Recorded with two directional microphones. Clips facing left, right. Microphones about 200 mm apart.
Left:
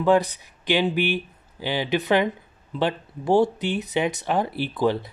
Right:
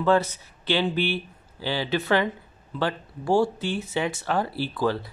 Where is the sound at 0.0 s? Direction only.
15° left (ahead or behind).